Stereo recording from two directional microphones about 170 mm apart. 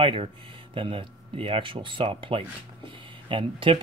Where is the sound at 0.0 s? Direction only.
35° right (ahead or behind).